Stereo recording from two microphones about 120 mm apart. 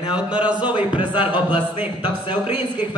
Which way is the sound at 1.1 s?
40° left (ahead or behind).